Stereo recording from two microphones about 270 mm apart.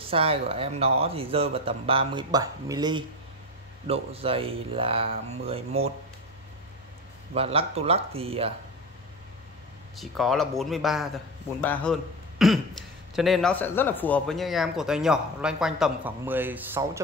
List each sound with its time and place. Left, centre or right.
0.1 s speech: right
7.3 s speech: right
9.9 s a man's voice: centre